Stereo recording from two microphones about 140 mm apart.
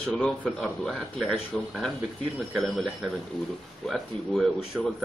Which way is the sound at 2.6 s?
Centre (ahead or behind).